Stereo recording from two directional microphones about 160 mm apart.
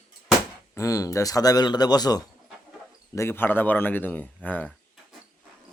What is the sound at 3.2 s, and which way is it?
A man's voice, 15° left (ahead or behind).